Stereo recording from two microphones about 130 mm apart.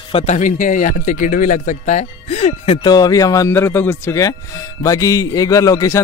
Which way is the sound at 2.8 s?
30° left (ahead or behind).